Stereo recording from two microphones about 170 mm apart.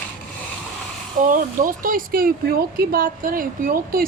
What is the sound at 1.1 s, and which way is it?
Speech, 50° right (ahead or behind).